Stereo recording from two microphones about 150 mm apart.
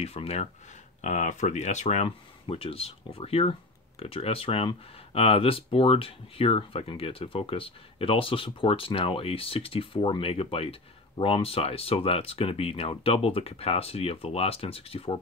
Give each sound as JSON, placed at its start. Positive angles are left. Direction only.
{"t": 0.0, "sound": "speech", "side_deg": 40}
{"t": 1.0, "sound": "speech", "side_deg": 55}